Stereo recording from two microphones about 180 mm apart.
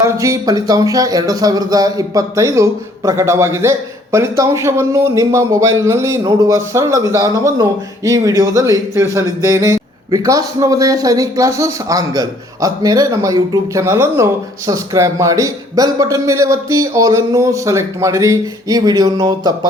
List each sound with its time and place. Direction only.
0.0 s speech: 15° right (ahead or behind)